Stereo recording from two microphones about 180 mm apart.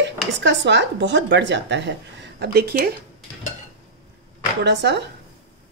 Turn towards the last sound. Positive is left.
turn(degrees=-75)  # may be behind; listen again after turning